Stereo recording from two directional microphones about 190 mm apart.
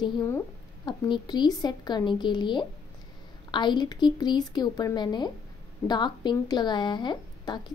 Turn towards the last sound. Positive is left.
turn(degrees=25)  # may be behind; listen again after turning